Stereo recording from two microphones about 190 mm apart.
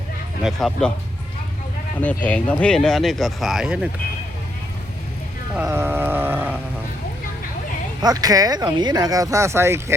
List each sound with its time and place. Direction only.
0.4 s speech: centre (ahead or behind)
2.0 s speech: 10° left (ahead or behind)
5.5 s a sound: 10° right (ahead or behind)
8.0 s speech: 20° right (ahead or behind)